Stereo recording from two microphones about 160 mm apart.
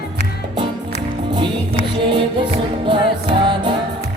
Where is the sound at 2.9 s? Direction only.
30° right (ahead or behind).